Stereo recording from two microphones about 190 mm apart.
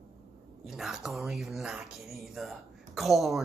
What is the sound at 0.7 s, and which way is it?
Speech, centre (ahead or behind).